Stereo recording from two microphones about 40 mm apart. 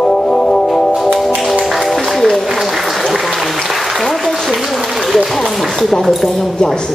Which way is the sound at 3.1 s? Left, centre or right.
Centre.